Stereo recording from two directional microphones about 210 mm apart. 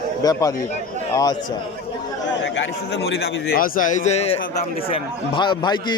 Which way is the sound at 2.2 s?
55° left (ahead or behind).